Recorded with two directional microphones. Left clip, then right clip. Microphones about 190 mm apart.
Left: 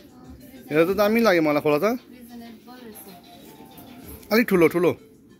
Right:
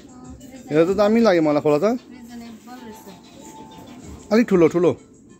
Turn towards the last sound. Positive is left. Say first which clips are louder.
# right 2 dB
turn(degrees=-10)  # may be behind; listen again after turning